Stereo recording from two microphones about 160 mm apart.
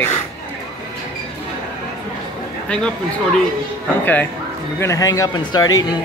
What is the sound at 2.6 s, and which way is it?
Speech, 5° left (ahead or behind).